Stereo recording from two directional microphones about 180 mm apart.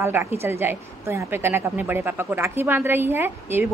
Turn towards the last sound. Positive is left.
turn(degrees=-10)  # may be behind; listen again after turning